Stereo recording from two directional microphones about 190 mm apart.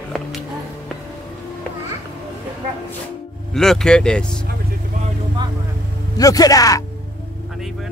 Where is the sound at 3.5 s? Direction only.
Centre (ahead or behind).